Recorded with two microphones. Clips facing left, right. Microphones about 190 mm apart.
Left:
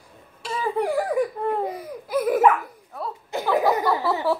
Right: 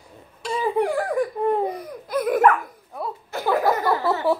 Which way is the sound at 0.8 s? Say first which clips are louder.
Even; 5° left (ahead or behind).